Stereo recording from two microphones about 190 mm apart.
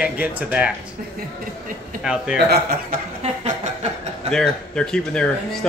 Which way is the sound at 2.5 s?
50° right (ahead or behind).